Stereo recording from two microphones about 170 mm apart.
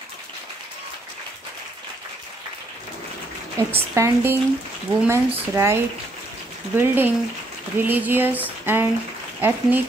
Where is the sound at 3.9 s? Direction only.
15° right (ahead or behind).